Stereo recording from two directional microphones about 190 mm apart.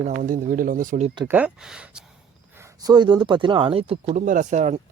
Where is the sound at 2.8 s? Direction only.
20° right (ahead or behind); by 4.8 s 40° right (ahead or behind).